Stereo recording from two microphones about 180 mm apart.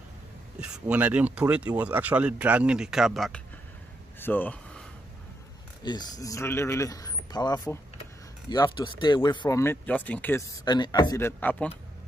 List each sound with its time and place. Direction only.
0.6 s speech: 5° right (ahead or behind)
4.2 s a sound: 10° left (ahead or behind)
5.9 s speech: 20° left (ahead or behind)
9.6 s speech: 10° left (ahead or behind)